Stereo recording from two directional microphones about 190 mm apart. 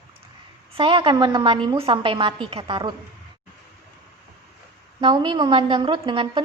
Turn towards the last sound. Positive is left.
turn(degrees=-25)  # may be behind; listen again after turning